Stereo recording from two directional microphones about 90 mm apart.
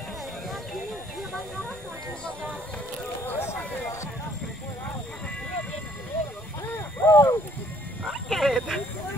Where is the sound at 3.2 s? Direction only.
25° left (ahead or behind).